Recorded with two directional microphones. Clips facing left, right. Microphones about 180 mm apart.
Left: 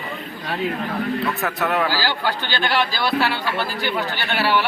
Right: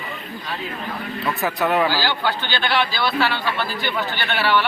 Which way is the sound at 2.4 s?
40° left (ahead or behind).